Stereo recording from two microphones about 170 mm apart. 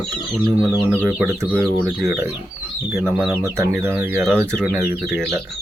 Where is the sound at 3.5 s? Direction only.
10° right (ahead or behind).